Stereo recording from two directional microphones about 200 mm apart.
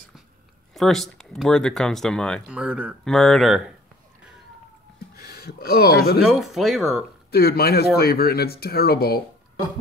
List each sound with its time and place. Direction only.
0.7 s speech: centre (ahead or behind)
5.1 s speech: 50° left (ahead or behind)
6.2 s speech: centre (ahead or behind)
7.2 s speech: 50° left (ahead or behind)